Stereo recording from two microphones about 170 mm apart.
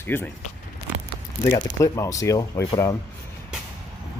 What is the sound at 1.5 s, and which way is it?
Speech, 20° left (ahead or behind).